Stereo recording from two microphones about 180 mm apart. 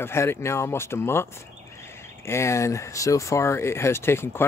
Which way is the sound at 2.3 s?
15° left (ahead or behind).